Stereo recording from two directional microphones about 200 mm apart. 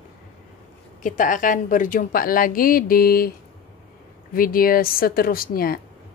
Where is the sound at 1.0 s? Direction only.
40° left (ahead or behind).